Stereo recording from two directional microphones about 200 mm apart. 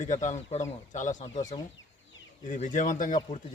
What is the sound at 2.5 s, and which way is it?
Speech, 40° left (ahead or behind).